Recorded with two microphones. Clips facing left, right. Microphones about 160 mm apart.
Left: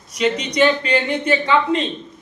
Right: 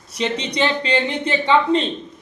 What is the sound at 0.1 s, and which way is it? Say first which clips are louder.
Speech: left 3 dB; 30° right (ahead or behind).